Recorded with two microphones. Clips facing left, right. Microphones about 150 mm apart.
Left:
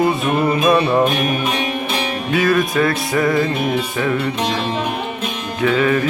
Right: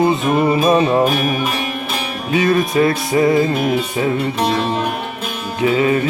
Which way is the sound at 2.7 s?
25° right (ahead or behind).